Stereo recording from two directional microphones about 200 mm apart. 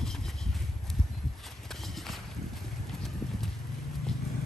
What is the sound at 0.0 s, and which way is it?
Horse, centre (ahead or behind).